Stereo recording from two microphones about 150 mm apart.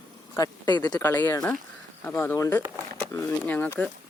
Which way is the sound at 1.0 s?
15° left (ahead or behind).